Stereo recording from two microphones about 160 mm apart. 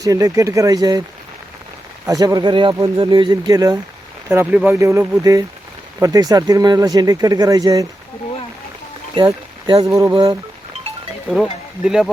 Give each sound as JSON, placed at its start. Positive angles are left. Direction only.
{"t": 0.0, "sound": "speech", "side_deg": -20}
{"t": 2.0, "sound": "speech", "side_deg": -25}
{"t": 4.3, "sound": "speech", "side_deg": -10}
{"t": 9.1, "sound": "speech", "side_deg": -30}
{"t": 9.8, "sound": "speech", "side_deg": -20}
{"t": 11.8, "sound": "speech", "side_deg": -5}